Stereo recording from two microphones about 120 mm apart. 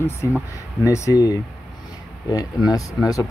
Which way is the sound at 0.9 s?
30° left (ahead or behind).